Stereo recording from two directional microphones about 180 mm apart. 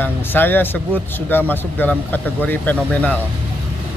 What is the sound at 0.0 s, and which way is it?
Speech, 10° left (ahead or behind).